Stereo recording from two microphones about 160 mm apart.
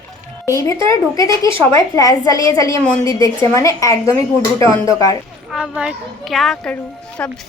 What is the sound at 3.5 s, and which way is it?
Speech, 20° left (ahead or behind).